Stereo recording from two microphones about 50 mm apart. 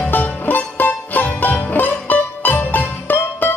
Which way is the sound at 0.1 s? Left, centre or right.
Left.